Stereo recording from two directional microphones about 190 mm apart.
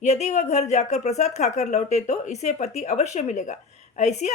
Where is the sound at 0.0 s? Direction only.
35° left (ahead or behind).